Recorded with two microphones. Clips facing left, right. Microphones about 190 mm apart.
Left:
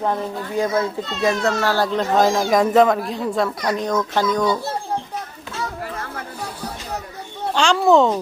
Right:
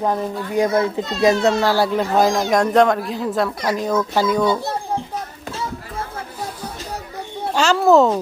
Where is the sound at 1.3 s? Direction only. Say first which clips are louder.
Right 4 dB; 30° right (ahead or behind).